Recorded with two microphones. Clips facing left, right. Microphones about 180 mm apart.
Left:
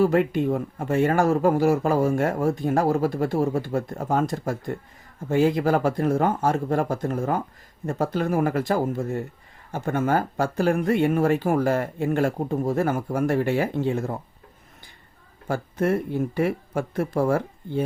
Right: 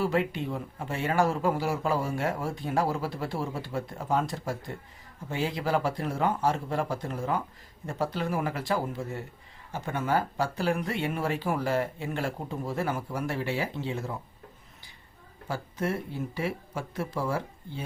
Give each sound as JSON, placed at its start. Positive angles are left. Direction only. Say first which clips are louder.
{"t": 0.0, "sound": "speech", "louder": "left 8 dB", "side_deg": 50}
{"t": 15.4, "sound": "speech", "louder": "left 8 dB", "side_deg": 55}